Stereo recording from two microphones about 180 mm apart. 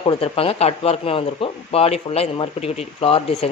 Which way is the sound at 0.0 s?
30° left (ahead or behind).